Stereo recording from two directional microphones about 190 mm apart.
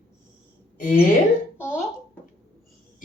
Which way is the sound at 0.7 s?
45° left (ahead or behind).